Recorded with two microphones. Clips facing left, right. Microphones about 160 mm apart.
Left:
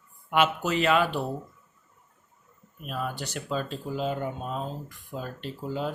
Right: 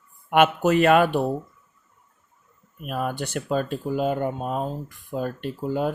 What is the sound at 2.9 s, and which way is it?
Speech, 55° right (ahead or behind).